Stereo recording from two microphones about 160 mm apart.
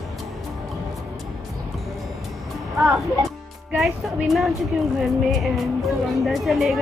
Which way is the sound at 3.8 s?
Centre (ahead or behind).